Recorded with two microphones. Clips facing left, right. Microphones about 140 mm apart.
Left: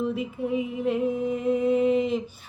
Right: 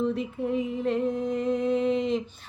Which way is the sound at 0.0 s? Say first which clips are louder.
Even; centre (ahead or behind).